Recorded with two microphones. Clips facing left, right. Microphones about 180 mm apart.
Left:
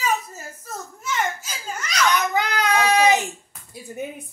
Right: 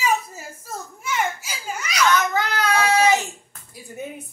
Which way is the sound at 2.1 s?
15° left (ahead or behind).